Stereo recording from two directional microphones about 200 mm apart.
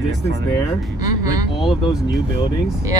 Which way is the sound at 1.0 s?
15° right (ahead or behind).